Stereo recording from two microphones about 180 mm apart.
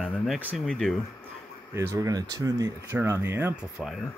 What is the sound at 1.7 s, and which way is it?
Speech, 20° right (ahead or behind).